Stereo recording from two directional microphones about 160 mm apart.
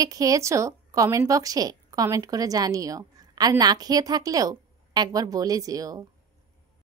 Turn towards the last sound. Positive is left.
turn(degrees=-20)  # may be behind; listen again after turning